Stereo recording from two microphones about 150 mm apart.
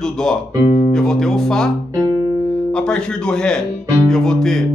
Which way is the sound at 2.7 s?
5° left (ahead or behind).